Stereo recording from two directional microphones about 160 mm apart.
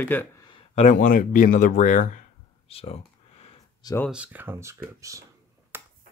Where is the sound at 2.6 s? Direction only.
40° left (ahead or behind).